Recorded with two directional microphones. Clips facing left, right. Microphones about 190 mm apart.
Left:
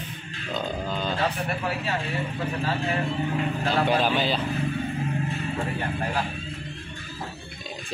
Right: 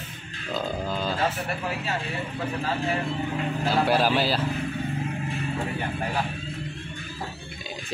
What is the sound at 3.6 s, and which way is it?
Speech, 5° right (ahead or behind).